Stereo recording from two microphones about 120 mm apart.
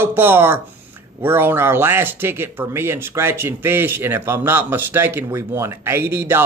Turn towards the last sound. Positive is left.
turn(degrees=-20)  # may be behind; listen again after turning